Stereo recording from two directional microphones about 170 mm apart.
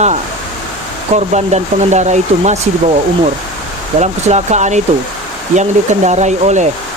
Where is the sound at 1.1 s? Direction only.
45° right (ahead or behind).